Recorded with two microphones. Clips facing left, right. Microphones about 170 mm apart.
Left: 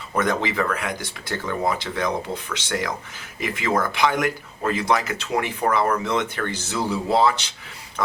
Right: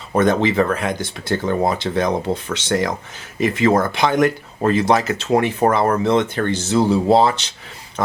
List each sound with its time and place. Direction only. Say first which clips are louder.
0.2 s speech: right 7 dB; 30° right (ahead or behind)